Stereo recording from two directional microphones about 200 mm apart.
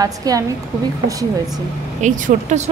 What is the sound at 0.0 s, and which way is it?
Speech, 20° right (ahead or behind).